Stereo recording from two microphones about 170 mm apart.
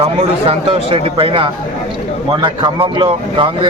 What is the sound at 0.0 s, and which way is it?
A man's voice, 35° right (ahead or behind).